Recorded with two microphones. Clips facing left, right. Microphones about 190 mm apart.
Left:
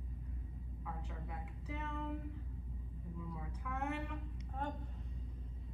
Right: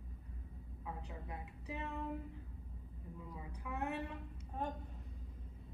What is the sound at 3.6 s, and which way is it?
Speech, 15° right (ahead or behind).